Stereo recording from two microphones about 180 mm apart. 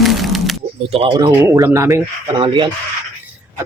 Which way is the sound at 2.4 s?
25° right (ahead or behind).